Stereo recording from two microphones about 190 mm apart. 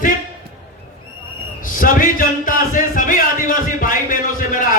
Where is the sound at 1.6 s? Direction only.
45° left (ahead or behind).